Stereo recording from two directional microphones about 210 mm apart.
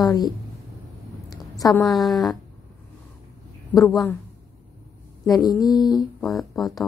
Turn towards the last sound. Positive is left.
turn(degrees=0)  # may be behind; listen again after turning